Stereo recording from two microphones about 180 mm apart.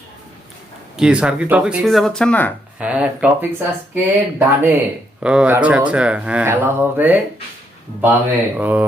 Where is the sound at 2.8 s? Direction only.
5° right (ahead or behind).